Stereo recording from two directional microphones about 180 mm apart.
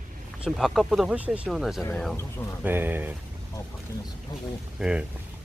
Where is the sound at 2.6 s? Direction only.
10° right (ahead or behind).